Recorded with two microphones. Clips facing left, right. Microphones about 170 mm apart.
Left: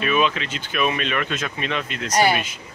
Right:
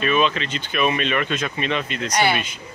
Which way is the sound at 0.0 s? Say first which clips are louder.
Right 1 dB; 5° left (ahead or behind).